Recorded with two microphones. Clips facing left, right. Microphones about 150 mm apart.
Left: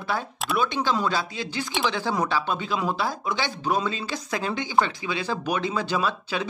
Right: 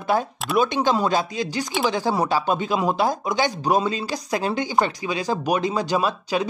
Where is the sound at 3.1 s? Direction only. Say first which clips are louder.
Right 6 dB; 45° right (ahead or behind).